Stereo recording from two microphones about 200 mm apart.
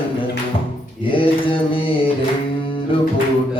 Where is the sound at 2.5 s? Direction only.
25° left (ahead or behind).